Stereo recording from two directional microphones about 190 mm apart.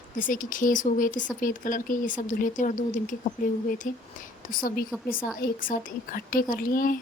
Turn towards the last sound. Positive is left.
turn(degrees=50)  # may be behind; listen again after turning